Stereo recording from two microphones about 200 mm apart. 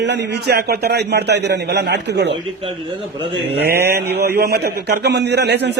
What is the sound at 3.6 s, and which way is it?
Mantra, 55° right (ahead or behind).